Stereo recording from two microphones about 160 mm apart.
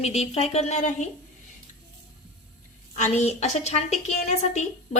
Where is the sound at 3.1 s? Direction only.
45° left (ahead or behind).